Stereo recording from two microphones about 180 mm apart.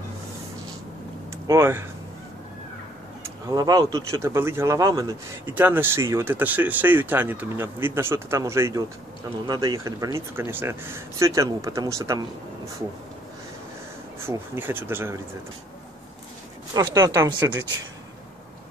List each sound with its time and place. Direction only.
1.5 s speech: 15° right (ahead or behind)
3.4 s speech: 20° right (ahead or behind)
14.2 s speech: 15° right (ahead or behind)
16.7 s speech: 20° right (ahead or behind)